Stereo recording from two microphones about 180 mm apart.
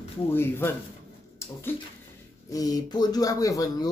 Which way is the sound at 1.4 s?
15° left (ahead or behind).